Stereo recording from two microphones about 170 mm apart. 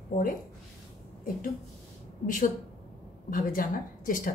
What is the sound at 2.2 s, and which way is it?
A woman's voice, 50° left (ahead or behind).